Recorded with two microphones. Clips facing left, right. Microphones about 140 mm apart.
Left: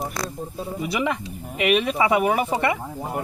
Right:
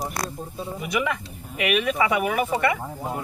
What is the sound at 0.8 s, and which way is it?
Speech, 30° left (ahead or behind).